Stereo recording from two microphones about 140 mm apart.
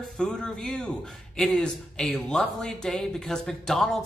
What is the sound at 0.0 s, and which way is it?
A man's voice, 5° left (ahead or behind).